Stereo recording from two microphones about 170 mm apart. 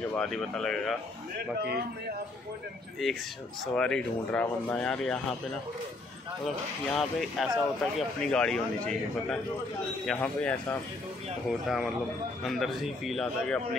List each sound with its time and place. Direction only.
0.1 s speech: 5° left (ahead or behind)
1.6 s a man's voice: 70° right (ahead or behind)
3.0 s speech: centre (ahead or behind)
6.4 s a man's voice: centre (ahead or behind)
11.6 s speech: 5° right (ahead or behind)